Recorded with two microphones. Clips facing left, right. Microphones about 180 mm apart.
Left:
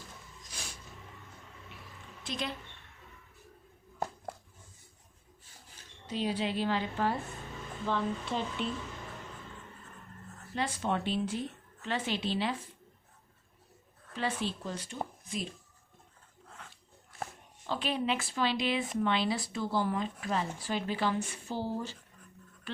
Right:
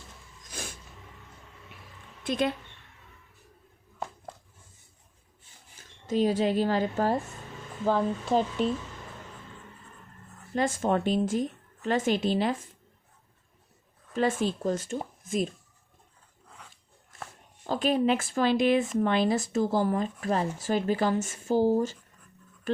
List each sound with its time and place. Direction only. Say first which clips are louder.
2.2 s speech: right 10 dB; 55° right (ahead or behind)
6.1 s speech: right 8 dB; 45° right (ahead or behind)
10.5 s speech: right 7 dB; 45° right (ahead or behind)
14.1 s speech: right 8 dB; 45° right (ahead or behind)
17.6 s speech: right 8 dB; 45° right (ahead or behind)
22.7 s a sound: right 12 dB; 45° right (ahead or behind)